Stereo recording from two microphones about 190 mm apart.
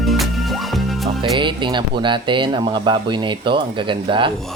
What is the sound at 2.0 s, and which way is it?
Speech, 25° right (ahead or behind).